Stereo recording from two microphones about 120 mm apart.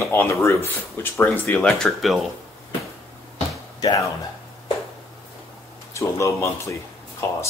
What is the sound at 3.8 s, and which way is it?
Speech, 30° left (ahead or behind).